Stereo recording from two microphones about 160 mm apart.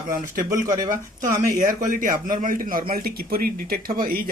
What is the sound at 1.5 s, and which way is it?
A man's voice, 55° right (ahead or behind).